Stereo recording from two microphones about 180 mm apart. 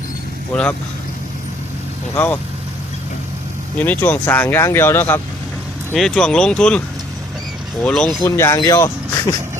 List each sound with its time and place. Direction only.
0.5 s speech: 5° left (ahead or behind)
2.1 s speech: 10° left (ahead or behind)
3.8 s speech: 10° left (ahead or behind)
7.9 s speech: 5° left (ahead or behind)
8.2 s speech: 20° left (ahead or behind)